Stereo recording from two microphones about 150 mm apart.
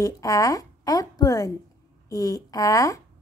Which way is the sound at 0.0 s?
20° left (ahead or behind).